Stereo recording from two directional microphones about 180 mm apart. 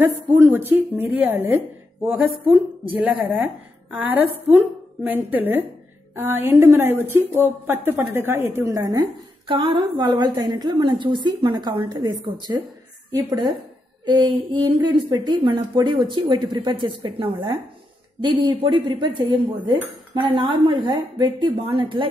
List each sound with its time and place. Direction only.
0.3 s a woman's voice: 10° right (ahead or behind)
3.0 s a woman's voice: 10° right (ahead or behind); by 22.0 s 30° right (ahead or behind)